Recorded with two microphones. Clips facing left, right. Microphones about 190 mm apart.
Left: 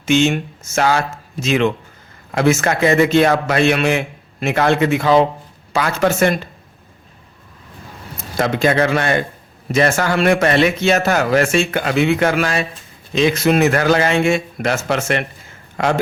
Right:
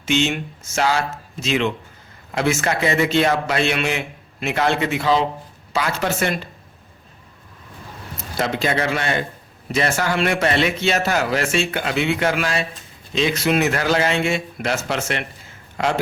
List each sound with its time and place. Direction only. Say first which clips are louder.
0.0 s a man's voice: left 5 dB; 45° left (ahead or behind)
8.4 s a man's voice: left 6 dB; 50° left (ahead or behind)